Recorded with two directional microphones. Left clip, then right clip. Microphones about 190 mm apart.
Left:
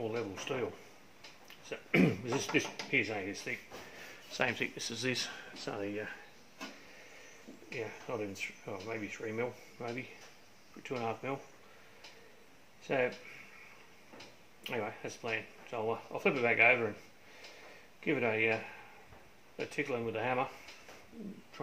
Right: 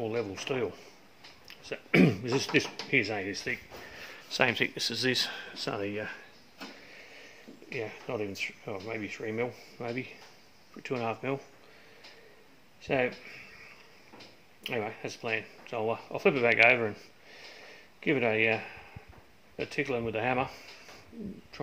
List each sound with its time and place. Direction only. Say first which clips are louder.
0.1 s speech: right 5 dB; 50° right (ahead or behind)
4.7 s speech: right 7 dB; 35° right (ahead or behind); by 6.1 s 55° right (ahead or behind)
7.7 s speech: right 4 dB; 50° right (ahead or behind)
12.8 s speech: right 4 dB; 55° right (ahead or behind)
14.6 s speech: right 4 dB; 55° right (ahead or behind)
18.0 s speech: right 5 dB; 55° right (ahead or behind)